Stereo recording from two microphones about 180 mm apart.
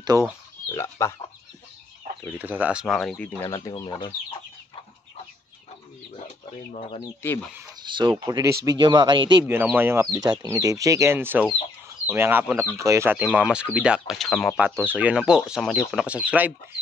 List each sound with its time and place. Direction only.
0.0 s speech: 20° right (ahead or behind)
0.7 s speech: 15° left (ahead or behind)
2.3 s speech: 10° right (ahead or behind)
3.4 s speech: 20° left (ahead or behind)
6.7 s speech: 30° left (ahead or behind)
7.9 s speech: 25° right (ahead or behind)
9.5 s speech: 10° right (ahead or behind)
14.6 s speech: 10° right (ahead or behind)